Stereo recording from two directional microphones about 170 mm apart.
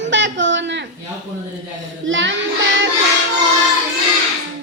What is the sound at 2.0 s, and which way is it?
Child singing, 90° right.